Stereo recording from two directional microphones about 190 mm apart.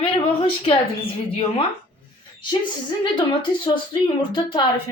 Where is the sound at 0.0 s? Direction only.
30° left (ahead or behind).